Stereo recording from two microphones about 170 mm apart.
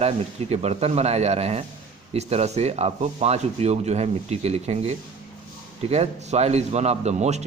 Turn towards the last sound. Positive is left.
turn(degrees=-40)  # may be behind; listen again after turning